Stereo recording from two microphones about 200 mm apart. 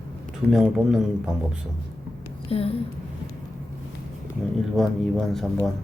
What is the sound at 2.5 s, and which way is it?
Speech, 30° left (ahead or behind).